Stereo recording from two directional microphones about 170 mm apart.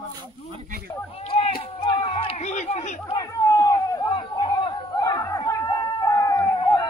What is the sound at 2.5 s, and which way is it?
Speech, 45° left (ahead or behind).